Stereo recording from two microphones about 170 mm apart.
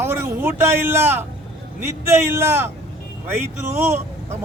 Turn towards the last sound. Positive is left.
turn(degrees=-15)  # may be behind; listen again after turning